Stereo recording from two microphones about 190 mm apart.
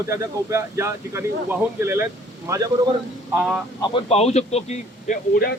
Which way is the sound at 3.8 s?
30° left (ahead or behind).